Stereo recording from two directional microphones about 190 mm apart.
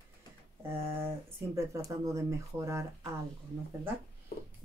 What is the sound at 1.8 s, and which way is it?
A woman's voice, 15° right (ahead or behind).